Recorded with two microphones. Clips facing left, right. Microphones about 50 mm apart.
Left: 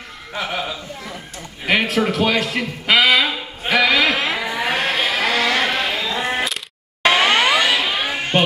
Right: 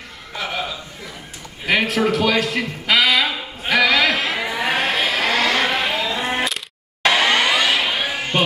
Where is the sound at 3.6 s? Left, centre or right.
Centre.